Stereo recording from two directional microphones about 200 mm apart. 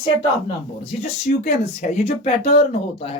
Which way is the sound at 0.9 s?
35° left (ahead or behind).